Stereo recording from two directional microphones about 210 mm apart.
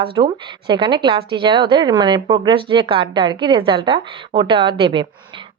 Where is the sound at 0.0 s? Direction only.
25° right (ahead or behind).